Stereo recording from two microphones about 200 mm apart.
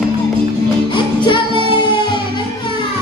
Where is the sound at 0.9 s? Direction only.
25° left (ahead or behind).